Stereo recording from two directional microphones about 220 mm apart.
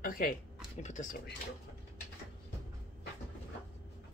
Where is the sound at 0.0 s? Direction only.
40° left (ahead or behind).